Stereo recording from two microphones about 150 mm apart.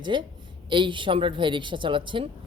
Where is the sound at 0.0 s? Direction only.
30° right (ahead or behind).